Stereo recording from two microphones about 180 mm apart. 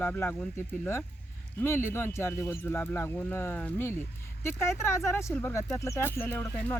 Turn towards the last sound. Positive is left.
turn(degrees=10)  # may be behind; listen again after turning